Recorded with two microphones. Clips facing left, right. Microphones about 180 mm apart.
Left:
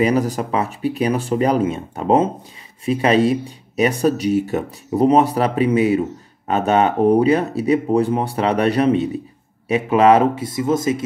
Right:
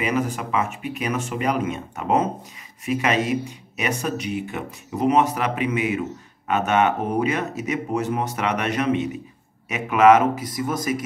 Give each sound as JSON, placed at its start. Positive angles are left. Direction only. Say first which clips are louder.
{"t": 0.0, "sound": "speech", "louder": "left 6 dB", "side_deg": 35}